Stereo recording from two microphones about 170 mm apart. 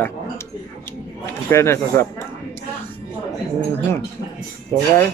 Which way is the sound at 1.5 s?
15° left (ahead or behind).